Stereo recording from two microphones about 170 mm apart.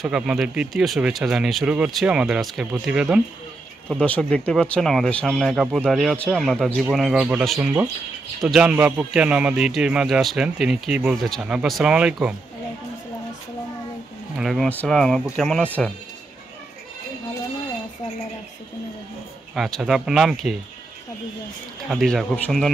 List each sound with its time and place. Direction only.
0.0 s a man's voice: centre (ahead or behind)
4.0 s a man's voice: 5° left (ahead or behind)
14.3 s a man's voice: centre (ahead or behind)
19.5 s a man's voice: centre (ahead or behind)
21.8 s a man's voice: centre (ahead or behind)